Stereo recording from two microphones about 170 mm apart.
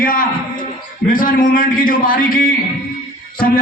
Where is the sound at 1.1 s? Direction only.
55° left (ahead or behind).